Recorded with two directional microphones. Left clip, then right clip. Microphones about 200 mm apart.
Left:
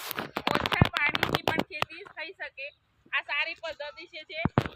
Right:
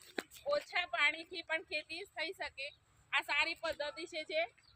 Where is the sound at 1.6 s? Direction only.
60° right (ahead or behind).